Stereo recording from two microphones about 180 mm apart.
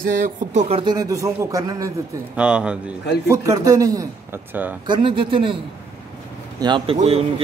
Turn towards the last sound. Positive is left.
turn(degrees=-35)  # may be behind; listen again after turning